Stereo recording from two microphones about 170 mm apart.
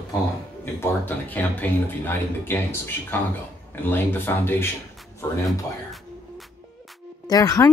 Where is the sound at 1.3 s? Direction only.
10° left (ahead or behind).